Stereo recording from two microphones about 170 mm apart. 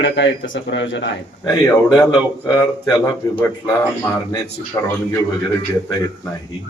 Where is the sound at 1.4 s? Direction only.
20° left (ahead or behind).